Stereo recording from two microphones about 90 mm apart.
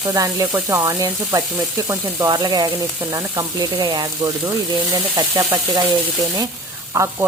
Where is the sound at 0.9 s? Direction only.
40° right (ahead or behind).